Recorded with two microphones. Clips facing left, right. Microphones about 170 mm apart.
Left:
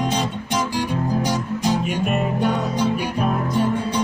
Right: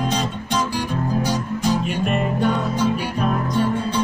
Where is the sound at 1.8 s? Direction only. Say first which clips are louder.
Even; 5° left (ahead or behind).